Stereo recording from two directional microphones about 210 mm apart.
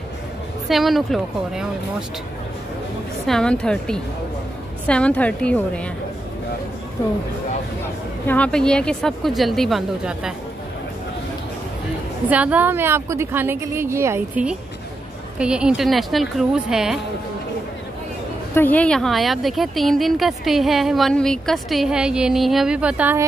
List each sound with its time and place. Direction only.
0.7 s a woman's voice: centre (ahead or behind)
3.3 s a woman's voice: 5° left (ahead or behind)
8.3 s a woman's voice: 5° left (ahead or behind)
12.3 s a woman's voice: 5° right (ahead or behind)
18.5 s a woman's voice: 10° left (ahead or behind); by 23.2 s 10° right (ahead or behind)